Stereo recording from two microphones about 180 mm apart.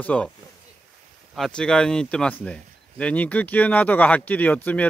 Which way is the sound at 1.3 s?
5° left (ahead or behind).